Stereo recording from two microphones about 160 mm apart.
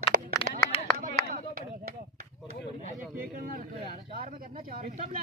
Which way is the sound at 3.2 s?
70° right (ahead or behind).